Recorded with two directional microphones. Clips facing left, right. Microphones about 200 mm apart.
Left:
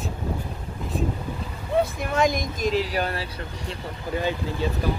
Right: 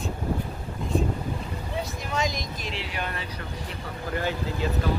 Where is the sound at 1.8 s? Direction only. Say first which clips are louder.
Left 8 dB; 55° left (ahead or behind); by 3.2 s 40° left (ahead or behind).